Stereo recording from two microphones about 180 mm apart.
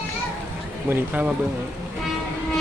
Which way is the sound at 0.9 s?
10° right (ahead or behind).